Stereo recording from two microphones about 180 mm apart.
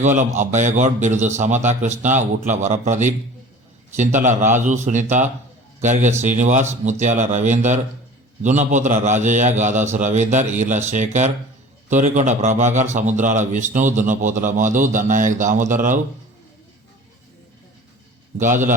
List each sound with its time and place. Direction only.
0.0 s a man's voice: 40° right (ahead or behind)
18.3 s a man's voice: 45° right (ahead or behind)